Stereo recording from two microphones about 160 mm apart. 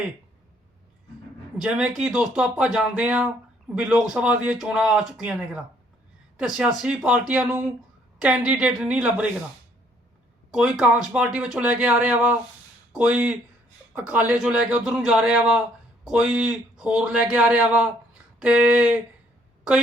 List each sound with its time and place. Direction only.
1.5 s a man's voice: 5° right (ahead or behind)
10.5 s a man's voice: 5° right (ahead or behind)